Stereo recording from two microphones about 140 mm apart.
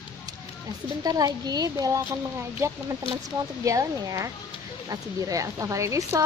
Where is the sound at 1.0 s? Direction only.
30° right (ahead or behind).